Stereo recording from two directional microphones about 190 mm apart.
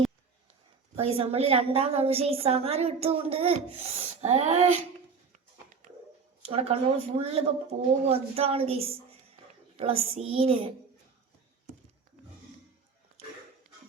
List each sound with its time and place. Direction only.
1.0 s a woman's voice: 30° right (ahead or behind)
6.4 s a woman's voice: 30° right (ahead or behind)